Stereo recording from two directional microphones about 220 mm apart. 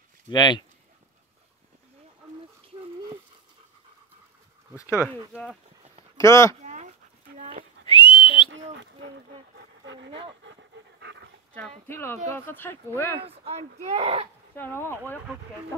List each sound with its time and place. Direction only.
0.3 s speech: 20° left (ahead or behind)
4.7 s speech: 15° left (ahead or behind)
5.0 s speech: centre (ahead or behind)
6.1 s speech: 15° left (ahead or behind)
6.6 s dog: 35° right (ahead or behind)
7.3 s a sound: 35° right (ahead or behind)
7.8 s whistling: 25° left (ahead or behind)
9.8 s dog: 55° right (ahead or behind)
11.9 s speech: 10° left (ahead or behind)
13.2 s speech: 25° right (ahead or behind)
14.5 s speech: 10° left (ahead or behind)